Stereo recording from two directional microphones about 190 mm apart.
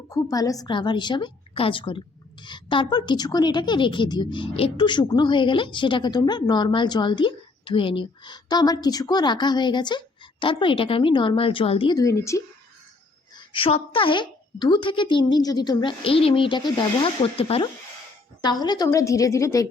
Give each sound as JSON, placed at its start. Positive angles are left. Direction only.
{"t": 0.1, "sound": "a woman's voice", "side_deg": 20}
{"t": 13.3, "sound": "a woman's voice", "side_deg": 25}